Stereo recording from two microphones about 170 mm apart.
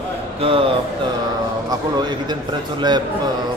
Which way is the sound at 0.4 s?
30° right (ahead or behind).